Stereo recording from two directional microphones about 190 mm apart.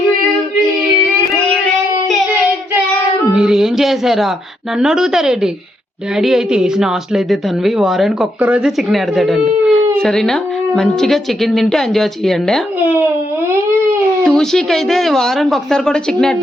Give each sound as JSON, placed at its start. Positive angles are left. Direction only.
{"t": 3.3, "sound": "a woman's voice", "side_deg": -5}
{"t": 14.3, "sound": "a woman's voice", "side_deg": 5}